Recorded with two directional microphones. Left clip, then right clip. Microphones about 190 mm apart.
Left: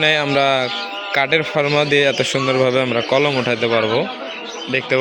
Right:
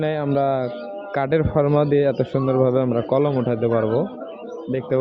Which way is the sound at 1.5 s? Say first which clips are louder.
Left 2 dB; centre (ahead or behind).